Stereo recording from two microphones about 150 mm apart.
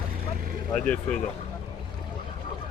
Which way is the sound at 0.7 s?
5° left (ahead or behind).